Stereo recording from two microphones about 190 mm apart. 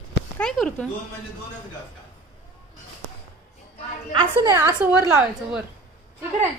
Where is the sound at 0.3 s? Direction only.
5° left (ahead or behind).